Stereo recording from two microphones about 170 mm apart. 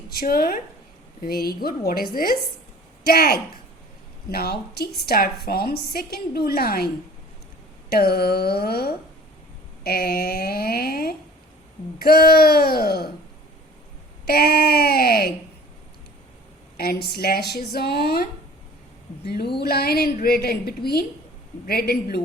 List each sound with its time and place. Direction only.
0.1 s a woman's voice: 65° left (ahead or behind)
14.3 s a woman's voice: 65° left (ahead or behind)
16.7 s a woman's voice: 65° left (ahead or behind)